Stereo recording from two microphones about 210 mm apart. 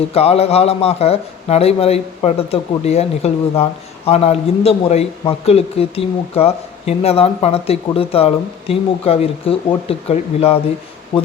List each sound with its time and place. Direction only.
0.1 s a man's voice: 30° left (ahead or behind)